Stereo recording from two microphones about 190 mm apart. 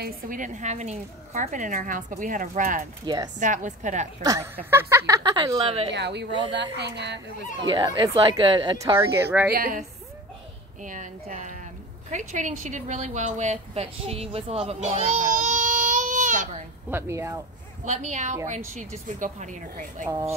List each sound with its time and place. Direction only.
0.0 s a woman's voice: 45° right (ahead or behind)
4.2 s speech: 15° right (ahead or behind)
5.9 s a woman's voice: 65° right (ahead or behind)
7.6 s speech: 25° right (ahead or behind)
9.5 s a woman's voice: 50° right (ahead or behind)
16.9 s speech: 15° right (ahead or behind)
17.8 s speech: 40° right (ahead or behind)